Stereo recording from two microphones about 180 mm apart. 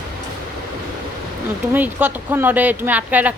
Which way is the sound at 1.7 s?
10° right (ahead or behind).